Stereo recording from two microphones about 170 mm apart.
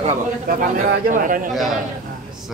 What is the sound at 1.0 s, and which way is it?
Speech, 50° right (ahead or behind).